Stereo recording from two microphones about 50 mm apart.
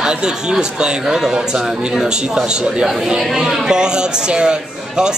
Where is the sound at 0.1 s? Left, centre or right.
Centre.